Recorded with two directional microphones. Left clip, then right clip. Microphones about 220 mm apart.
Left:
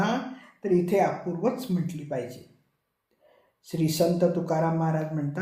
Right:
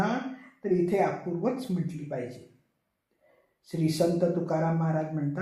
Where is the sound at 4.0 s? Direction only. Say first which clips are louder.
Left 2 dB; 45° left (ahead or behind).